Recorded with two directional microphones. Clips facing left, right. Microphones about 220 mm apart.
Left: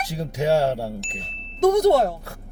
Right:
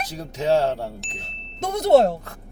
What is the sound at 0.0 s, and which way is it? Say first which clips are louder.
Speech: left 2 dB; 10° left (ahead or behind).